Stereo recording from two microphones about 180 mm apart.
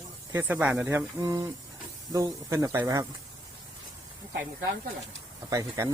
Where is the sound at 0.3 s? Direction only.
10° right (ahead or behind).